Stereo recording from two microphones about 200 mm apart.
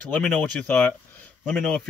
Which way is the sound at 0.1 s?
5° left (ahead or behind).